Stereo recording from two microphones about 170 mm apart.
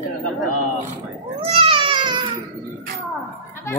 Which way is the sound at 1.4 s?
35° right (ahead or behind).